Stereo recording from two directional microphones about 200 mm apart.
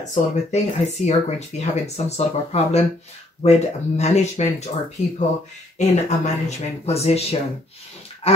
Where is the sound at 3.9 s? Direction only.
35° left (ahead or behind).